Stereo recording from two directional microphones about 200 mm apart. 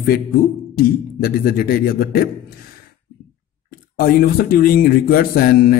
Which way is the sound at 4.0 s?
50° left (ahead or behind).